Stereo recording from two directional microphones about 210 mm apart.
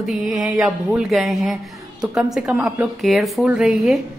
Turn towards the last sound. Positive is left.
turn(degrees=0)  # may be behind; listen again after turning